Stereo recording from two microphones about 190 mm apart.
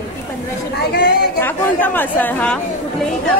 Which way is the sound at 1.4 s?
10° left (ahead or behind).